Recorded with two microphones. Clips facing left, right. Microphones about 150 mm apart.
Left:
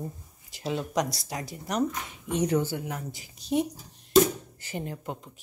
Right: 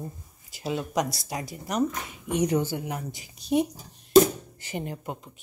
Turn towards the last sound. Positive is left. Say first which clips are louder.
# right 1 dB
turn(degrees=-10)  # may be behind; listen again after turning